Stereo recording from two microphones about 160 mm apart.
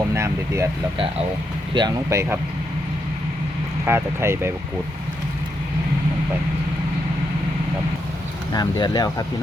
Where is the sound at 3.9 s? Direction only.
15° right (ahead or behind).